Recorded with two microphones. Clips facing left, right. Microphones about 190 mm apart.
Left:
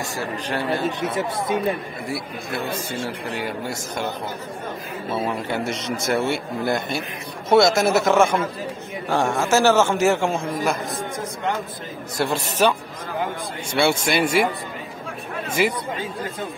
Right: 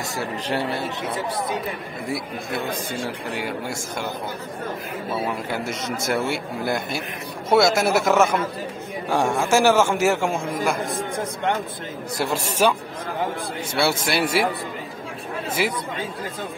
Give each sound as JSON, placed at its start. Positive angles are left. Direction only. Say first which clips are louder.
{"t": 1.0, "sound": "speech", "louder": "left 2 dB", "side_deg": 25}
{"t": 3.3, "sound": "a man's voice", "louder": "left 1 dB", "side_deg": -15}
{"t": 5.5, "sound": "a man's voice", "louder": "left 2 dB", "side_deg": -5}
{"t": 12.2, "sound": "a man's voice", "louder": "left 1 dB", "side_deg": -10}
{"t": 13.7, "sound": "a man's voice", "louder": "left 2 dB", "side_deg": -5}